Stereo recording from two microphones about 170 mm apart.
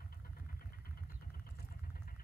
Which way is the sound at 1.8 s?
55° left (ahead or behind).